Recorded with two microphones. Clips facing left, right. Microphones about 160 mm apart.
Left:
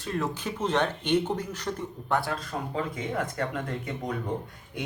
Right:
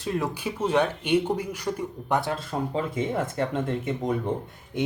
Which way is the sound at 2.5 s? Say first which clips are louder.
Right 6 dB; 30° right (ahead or behind).